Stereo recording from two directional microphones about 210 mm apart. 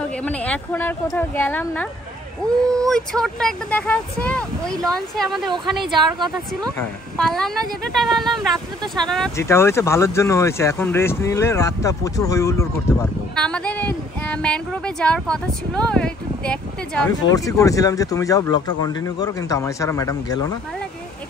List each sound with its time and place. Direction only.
0.2 s speech: 5° left (ahead or behind)
2.9 s speech: 5° left (ahead or behind)
6.1 s speech: 20° right (ahead or behind)
7.2 s speech: centre (ahead or behind)
17.3 s speech: 15° left (ahead or behind)